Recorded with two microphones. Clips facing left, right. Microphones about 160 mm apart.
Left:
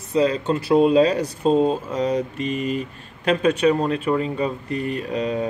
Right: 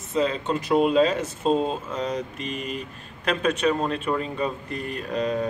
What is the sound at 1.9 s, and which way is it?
Speech, 35° left (ahead or behind).